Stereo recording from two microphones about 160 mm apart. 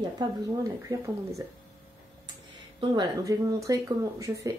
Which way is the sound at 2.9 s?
20° right (ahead or behind).